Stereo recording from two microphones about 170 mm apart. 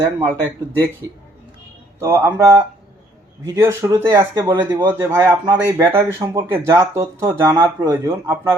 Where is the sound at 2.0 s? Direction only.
15° right (ahead or behind).